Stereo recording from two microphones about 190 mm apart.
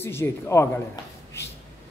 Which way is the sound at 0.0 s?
10° left (ahead or behind).